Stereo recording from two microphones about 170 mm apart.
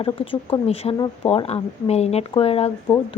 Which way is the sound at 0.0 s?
30° left (ahead or behind).